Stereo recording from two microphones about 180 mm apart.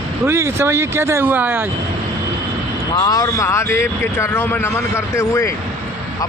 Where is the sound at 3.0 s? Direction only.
20° left (ahead or behind).